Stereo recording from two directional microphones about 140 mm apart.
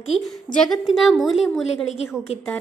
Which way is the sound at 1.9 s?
50° left (ahead or behind).